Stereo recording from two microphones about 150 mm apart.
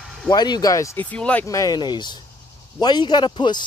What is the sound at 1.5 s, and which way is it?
A man's voice, 25° left (ahead or behind).